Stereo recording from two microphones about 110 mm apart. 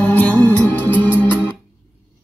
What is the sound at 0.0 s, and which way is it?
Music, 15° left (ahead or behind).